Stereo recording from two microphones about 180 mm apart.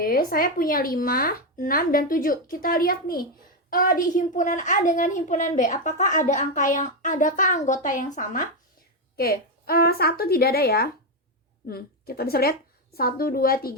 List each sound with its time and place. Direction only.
0.0 s a child's voice: 55° left (ahead or behind)